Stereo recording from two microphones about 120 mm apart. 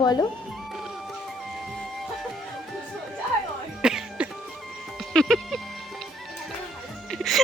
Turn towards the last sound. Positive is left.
turn(degrees=0)  # may be behind; listen again after turning